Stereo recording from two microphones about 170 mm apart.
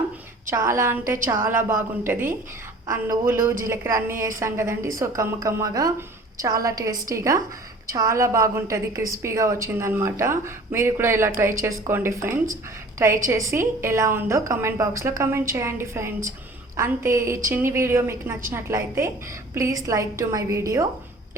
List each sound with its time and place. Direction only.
0.4 s a woman's voice: 15° right (ahead or behind)